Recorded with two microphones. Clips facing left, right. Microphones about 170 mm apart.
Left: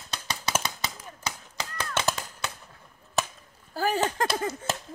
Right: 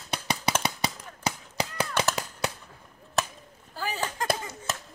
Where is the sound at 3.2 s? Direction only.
Centre (ahead or behind).